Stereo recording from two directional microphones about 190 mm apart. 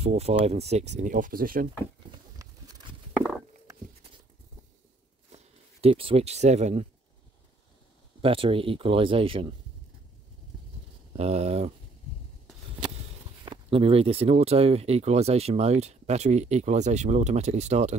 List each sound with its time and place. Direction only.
0.0 s speech: 35° right (ahead or behind); by 1.7 s 50° right (ahead or behind)
2.3 s a sound: 15° right (ahead or behind)
5.3 s speech: 30° right (ahead or behind)
8.2 s speech: 30° right (ahead or behind)
11.1 s speech: 35° right (ahead or behind)
13.5 s speech: 30° right (ahead or behind)